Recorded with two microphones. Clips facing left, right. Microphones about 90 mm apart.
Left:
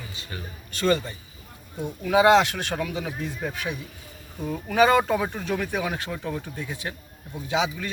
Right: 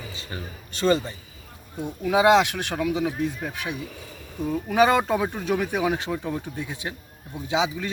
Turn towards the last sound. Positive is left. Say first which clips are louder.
# right 1 dB
turn(degrees=-20)  # may be behind; listen again after turning